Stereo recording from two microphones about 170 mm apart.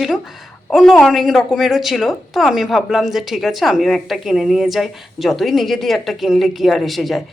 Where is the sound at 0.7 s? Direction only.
Centre (ahead or behind).